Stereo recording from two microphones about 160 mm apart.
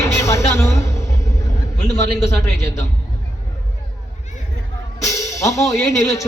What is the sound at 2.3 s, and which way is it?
Speech, 15° left (ahead or behind).